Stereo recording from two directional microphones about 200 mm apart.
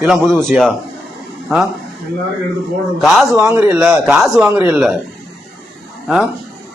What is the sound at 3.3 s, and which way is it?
A man's voice, 10° right (ahead or behind).